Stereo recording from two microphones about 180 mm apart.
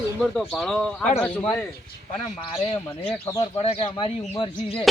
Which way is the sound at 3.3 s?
20° left (ahead or behind).